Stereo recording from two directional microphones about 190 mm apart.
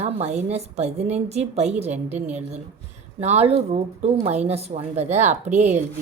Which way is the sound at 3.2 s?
35° right (ahead or behind).